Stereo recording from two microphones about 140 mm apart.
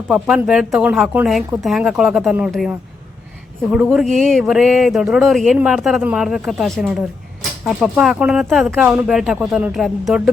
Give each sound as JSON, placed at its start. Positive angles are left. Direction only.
{"t": 0.1, "sound": "speech", "side_deg": -5}